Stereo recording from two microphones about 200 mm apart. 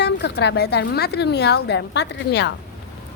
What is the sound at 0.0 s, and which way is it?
Speech, 60° left (ahead or behind).